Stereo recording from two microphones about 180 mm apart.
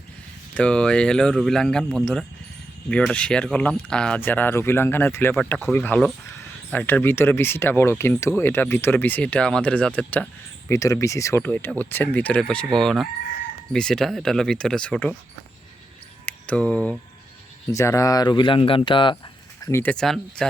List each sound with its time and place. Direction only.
0.5 s speech: 5° left (ahead or behind)
16.2 s a sound: 5° left (ahead or behind)
17.7 s speech: 15° left (ahead or behind)
19.6 s speech: 10° left (ahead or behind)